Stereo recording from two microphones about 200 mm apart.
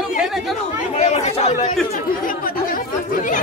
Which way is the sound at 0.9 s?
35° left (ahead or behind).